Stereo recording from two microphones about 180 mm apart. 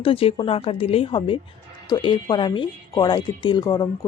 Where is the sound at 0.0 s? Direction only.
30° left (ahead or behind).